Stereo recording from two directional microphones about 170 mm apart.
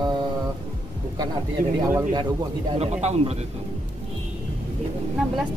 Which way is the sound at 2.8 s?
40° right (ahead or behind).